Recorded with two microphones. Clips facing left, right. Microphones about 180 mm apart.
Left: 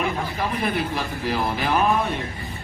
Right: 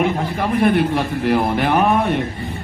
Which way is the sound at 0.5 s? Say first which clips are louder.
Right 12 dB; 55° right (ahead or behind).